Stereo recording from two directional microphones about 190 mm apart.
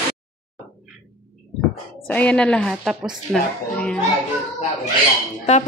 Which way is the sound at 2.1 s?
5° left (ahead or behind).